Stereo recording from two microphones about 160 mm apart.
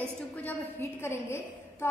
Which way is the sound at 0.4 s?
15° left (ahead or behind).